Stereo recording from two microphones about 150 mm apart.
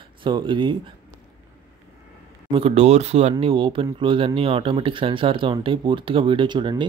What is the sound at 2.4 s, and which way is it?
Speech, 40° right (ahead or behind).